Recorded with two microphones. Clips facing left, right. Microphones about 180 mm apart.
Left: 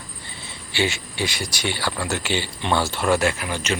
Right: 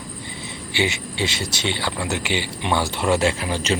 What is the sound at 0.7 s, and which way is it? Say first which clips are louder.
Speech: even; 20° right (ahead or behind).